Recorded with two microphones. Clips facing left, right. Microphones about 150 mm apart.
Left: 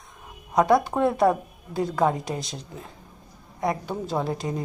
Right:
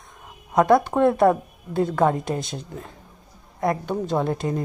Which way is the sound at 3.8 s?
Centre (ahead or behind).